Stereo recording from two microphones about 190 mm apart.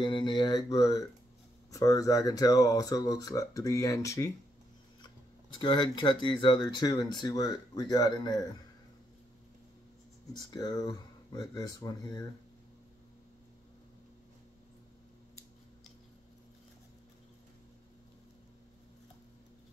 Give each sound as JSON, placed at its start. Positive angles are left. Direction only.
{"t": 0.0, "sound": "speech", "side_deg": 25}
{"t": 5.6, "sound": "speech", "side_deg": 25}
{"t": 10.4, "sound": "speech", "side_deg": 20}